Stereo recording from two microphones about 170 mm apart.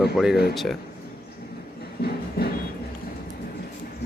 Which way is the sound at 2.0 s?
65° left (ahead or behind).